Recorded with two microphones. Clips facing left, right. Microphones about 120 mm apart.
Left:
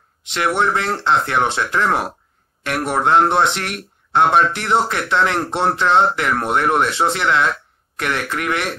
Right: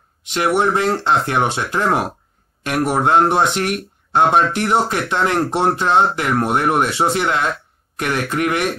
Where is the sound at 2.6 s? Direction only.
15° right (ahead or behind).